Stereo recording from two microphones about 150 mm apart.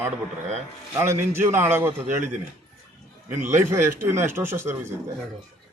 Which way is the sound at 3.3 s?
15° right (ahead or behind).